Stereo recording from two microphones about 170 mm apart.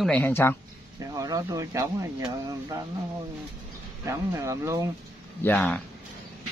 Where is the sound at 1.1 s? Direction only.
20° right (ahead or behind).